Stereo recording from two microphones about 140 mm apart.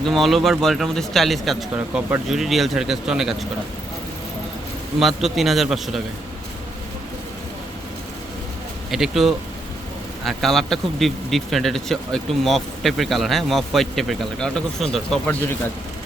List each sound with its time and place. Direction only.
0.1 s speech: centre (ahead or behind)
4.9 s speech: centre (ahead or behind)
8.9 s speech: centre (ahead or behind)
15.4 s speech: 15° left (ahead or behind)